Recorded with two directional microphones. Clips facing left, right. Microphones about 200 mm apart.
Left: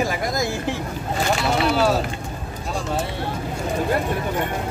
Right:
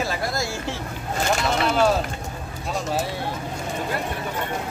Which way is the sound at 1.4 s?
5° left (ahead or behind).